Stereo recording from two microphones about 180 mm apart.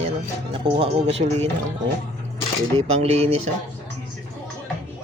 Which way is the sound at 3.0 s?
35° right (ahead or behind).